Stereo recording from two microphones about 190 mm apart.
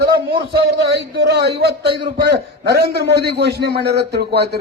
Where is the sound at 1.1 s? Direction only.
60° right (ahead or behind).